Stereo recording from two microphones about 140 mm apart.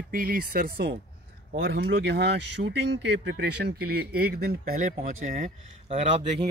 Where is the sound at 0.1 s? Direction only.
90° right.